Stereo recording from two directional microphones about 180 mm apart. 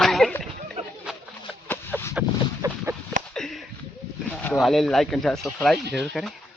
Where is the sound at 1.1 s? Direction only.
5° right (ahead or behind).